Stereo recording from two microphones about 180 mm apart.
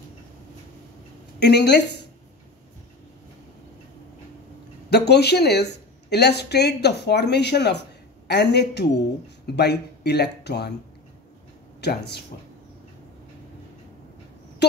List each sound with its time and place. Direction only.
1.4 s speech: 65° left (ahead or behind)
4.8 s speech: 65° left (ahead or behind)
11.8 s speech: 65° left (ahead or behind)
14.6 s speech: 65° left (ahead or behind)